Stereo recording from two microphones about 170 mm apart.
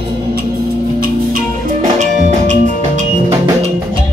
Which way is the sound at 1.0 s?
55° right (ahead or behind).